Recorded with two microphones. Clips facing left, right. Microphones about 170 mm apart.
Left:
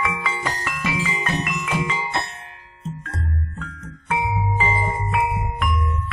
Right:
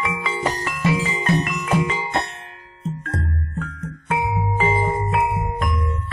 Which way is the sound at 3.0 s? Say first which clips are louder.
Right 3 dB; 50° right (ahead or behind).